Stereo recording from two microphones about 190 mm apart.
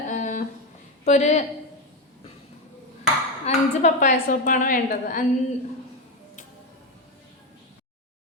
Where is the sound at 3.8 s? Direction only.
40° left (ahead or behind).